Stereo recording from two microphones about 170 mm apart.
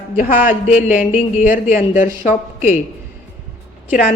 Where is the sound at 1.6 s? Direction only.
50° left (ahead or behind).